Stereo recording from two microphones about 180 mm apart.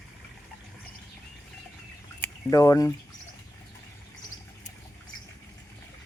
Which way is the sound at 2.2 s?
15° left (ahead or behind).